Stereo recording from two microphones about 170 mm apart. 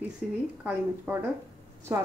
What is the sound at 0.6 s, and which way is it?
A woman's voice, 10° right (ahead or behind).